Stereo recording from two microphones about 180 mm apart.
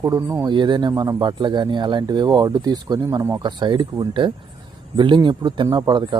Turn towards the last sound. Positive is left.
turn(degrees=-25)  # may be behind; listen again after turning